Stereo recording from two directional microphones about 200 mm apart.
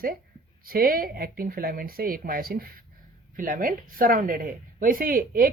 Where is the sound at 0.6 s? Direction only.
50° right (ahead or behind).